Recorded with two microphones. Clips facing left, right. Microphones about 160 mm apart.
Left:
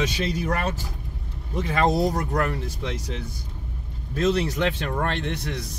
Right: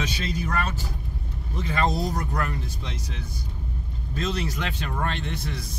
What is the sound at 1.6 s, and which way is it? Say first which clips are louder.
Speech: left 4 dB; 65° left (ahead or behind).